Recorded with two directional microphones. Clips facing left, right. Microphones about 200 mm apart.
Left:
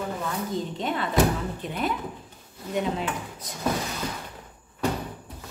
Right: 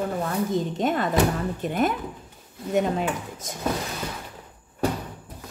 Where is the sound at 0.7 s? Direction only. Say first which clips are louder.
Right 1 dB; 45° right (ahead or behind).